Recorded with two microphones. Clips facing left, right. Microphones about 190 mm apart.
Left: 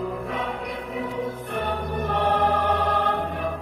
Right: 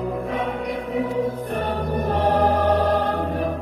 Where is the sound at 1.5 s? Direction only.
45° right (ahead or behind).